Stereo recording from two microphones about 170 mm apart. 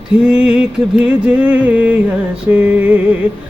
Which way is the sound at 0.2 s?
5° right (ahead or behind).